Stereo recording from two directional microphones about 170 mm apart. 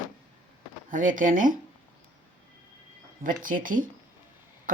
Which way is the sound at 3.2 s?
55° right (ahead or behind).